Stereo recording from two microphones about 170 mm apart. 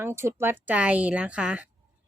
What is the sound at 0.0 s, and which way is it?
Speech, 15° right (ahead or behind).